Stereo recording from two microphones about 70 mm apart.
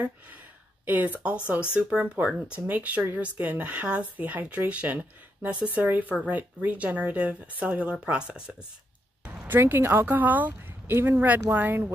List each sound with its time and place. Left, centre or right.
0.8 s speech: right
9.2 s a sound: right
9.6 s speech: right